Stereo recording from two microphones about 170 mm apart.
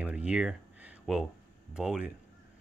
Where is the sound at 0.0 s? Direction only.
5° right (ahead or behind).